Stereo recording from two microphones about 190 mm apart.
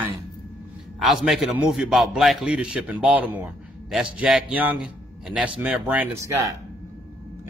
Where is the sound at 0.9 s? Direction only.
Centre (ahead or behind).